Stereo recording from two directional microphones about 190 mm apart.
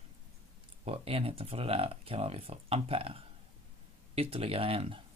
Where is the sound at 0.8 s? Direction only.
30° right (ahead or behind).